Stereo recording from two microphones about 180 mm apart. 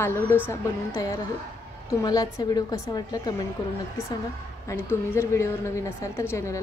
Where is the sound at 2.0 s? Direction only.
20° left (ahead or behind).